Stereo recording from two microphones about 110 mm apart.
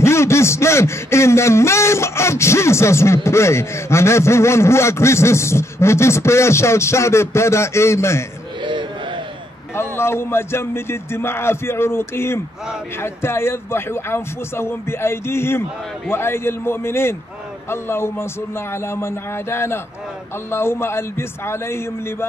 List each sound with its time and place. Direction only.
0.0 s speech: 25° left (ahead or behind)
8.6 s a sound: 45° right (ahead or behind)
9.8 s speech: 20° left (ahead or behind)